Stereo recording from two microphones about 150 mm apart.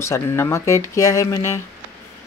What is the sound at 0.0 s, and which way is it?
Speech, 20° left (ahead or behind).